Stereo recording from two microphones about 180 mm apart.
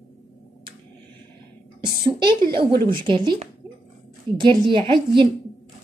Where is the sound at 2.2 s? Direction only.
25° right (ahead or behind).